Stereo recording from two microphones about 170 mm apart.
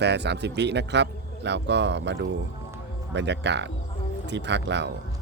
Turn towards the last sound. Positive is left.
turn(degrees=-90)